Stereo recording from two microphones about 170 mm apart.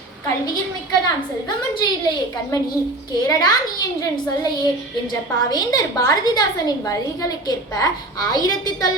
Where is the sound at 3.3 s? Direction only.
20° left (ahead or behind).